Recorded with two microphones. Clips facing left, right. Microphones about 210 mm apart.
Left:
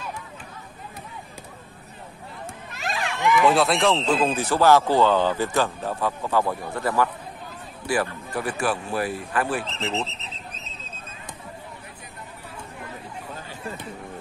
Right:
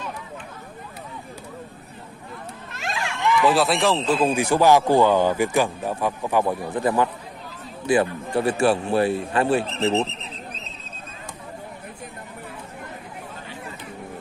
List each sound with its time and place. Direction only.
2.7 s a man's voice: centre (ahead or behind); by 9.7 s 25° right (ahead or behind)